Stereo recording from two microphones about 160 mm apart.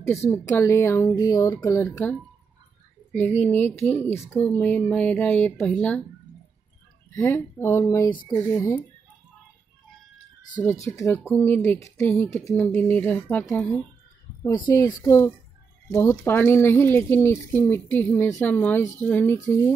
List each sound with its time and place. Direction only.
0.0 s speech: 15° left (ahead or behind)
3.3 s speech: 10° left (ahead or behind)
7.2 s speech: 15° left (ahead or behind)
10.7 s speech: 20° left (ahead or behind)
14.7 s speech: 20° left (ahead or behind)